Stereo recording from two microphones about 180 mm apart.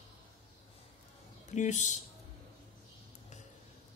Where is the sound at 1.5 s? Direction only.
40° left (ahead or behind).